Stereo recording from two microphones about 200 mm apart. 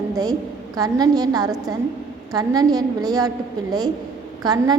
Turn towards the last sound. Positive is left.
turn(degrees=-20)  # may be behind; listen again after turning